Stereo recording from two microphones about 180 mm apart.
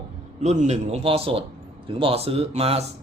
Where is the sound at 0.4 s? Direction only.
40° right (ahead or behind).